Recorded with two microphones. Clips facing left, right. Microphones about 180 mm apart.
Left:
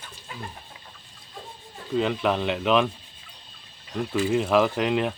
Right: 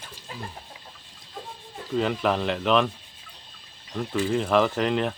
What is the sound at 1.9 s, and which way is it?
Speech, centre (ahead or behind).